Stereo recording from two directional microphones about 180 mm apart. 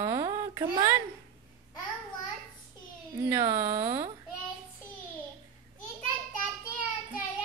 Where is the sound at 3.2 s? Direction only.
10° right (ahead or behind).